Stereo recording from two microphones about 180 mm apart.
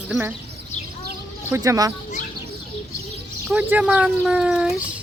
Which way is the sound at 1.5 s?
20° right (ahead or behind).